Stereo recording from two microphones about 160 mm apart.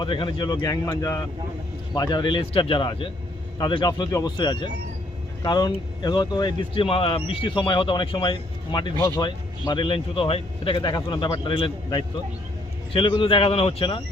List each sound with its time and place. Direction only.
0.0 s speech: 30° left (ahead or behind)